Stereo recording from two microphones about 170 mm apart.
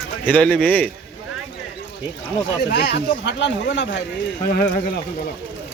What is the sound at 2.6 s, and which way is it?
Speech, 75° left (ahead or behind).